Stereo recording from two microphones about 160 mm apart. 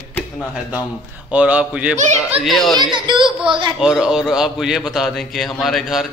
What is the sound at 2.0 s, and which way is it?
Speech, 40° right (ahead or behind).